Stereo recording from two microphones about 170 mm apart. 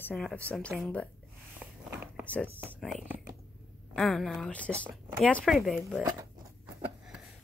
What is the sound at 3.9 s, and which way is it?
Speech, centre (ahead or behind).